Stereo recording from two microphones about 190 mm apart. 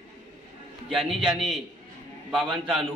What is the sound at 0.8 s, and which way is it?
A man's voice, centre (ahead or behind).